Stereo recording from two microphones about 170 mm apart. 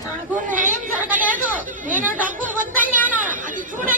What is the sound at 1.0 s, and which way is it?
Speech, 10° right (ahead or behind).